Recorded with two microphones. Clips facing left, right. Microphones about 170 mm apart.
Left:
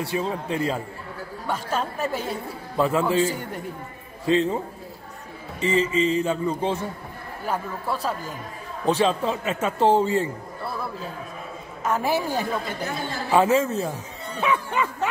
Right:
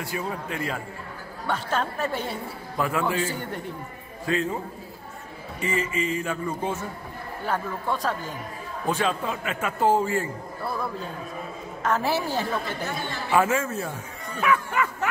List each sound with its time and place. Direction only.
0.0 s a man's voice: 25° left (ahead or behind)
1.5 s speech: 10° left (ahead or behind)
2.8 s a man's voice: 30° left (ahead or behind)
4.3 s a man's voice: 25° left (ahead or behind)
5.6 s a man's voice: 25° left (ahead or behind)
7.4 s speech: 10° left (ahead or behind)
8.8 s a man's voice: 30° left (ahead or behind)
11.8 s a man's voice: 10° left (ahead or behind)